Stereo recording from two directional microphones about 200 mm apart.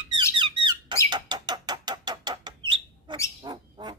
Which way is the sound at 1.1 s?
20° right (ahead or behind).